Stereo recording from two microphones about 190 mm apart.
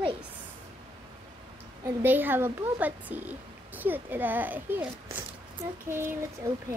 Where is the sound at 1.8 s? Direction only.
10° right (ahead or behind).